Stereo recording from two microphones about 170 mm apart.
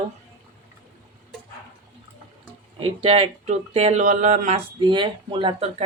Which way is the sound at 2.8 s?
35° right (ahead or behind).